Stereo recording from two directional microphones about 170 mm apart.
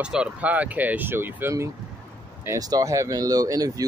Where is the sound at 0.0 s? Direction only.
5° right (ahead or behind).